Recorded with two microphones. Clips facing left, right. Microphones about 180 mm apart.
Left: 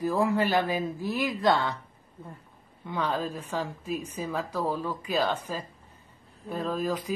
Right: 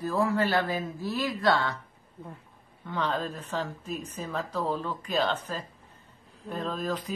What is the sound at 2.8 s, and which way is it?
A woman's voice, 10° left (ahead or behind).